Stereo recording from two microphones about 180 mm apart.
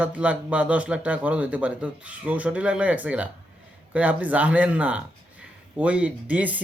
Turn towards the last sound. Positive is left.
turn(degrees=-10)  # may be behind; listen again after turning